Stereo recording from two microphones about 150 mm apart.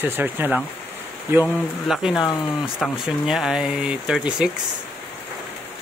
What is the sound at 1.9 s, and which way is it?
Speech, centre (ahead or behind).